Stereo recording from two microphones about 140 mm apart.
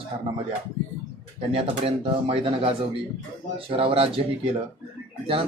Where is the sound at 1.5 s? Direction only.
45° right (ahead or behind).